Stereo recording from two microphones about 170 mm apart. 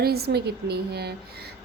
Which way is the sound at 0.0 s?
70° right (ahead or behind).